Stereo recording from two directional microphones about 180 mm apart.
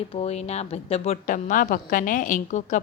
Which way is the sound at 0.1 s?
35° left (ahead or behind).